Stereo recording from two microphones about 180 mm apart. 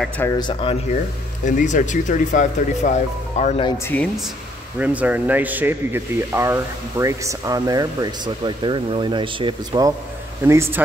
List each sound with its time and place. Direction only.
0.4 s speech: 30° left (ahead or behind)
1.4 s speech: 45° left (ahead or behind)
4.7 s speech: 10° right (ahead or behind)